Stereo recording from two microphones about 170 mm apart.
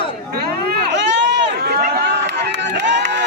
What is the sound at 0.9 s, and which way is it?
Run, 90° right.